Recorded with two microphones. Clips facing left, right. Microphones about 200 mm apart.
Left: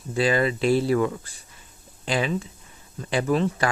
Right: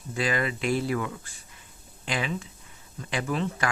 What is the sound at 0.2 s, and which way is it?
Speech, 30° left (ahead or behind).